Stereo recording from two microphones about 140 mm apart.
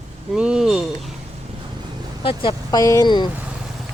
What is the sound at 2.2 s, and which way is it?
Speech, 40° left (ahead or behind).